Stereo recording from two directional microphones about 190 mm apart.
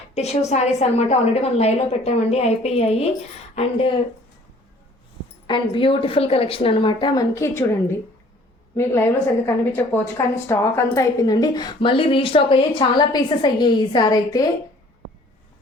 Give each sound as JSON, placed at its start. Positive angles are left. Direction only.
{"t": 0.1, "sound": "a woman's voice", "side_deg": 35}
{"t": 5.5, "sound": "a woman's voice", "side_deg": 25}